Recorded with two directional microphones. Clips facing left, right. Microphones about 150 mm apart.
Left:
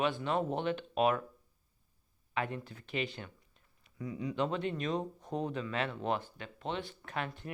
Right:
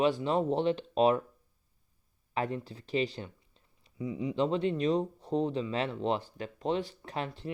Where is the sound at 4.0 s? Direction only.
20° right (ahead or behind).